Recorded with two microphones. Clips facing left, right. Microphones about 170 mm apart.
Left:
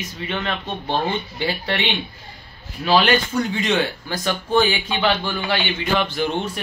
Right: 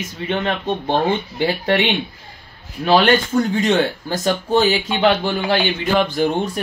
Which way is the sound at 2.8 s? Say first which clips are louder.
Right 3 dB; 50° right (ahead or behind).